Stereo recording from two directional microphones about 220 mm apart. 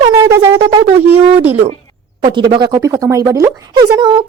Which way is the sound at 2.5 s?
15° right (ahead or behind).